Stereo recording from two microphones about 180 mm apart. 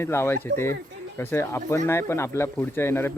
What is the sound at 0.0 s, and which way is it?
Child singing, 15° left (ahead or behind).